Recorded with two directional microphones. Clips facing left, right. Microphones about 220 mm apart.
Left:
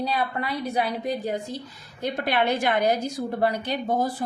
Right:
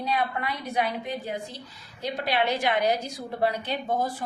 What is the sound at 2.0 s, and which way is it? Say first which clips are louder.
A woman's voice: left 2 dB; 55° left (ahead or behind).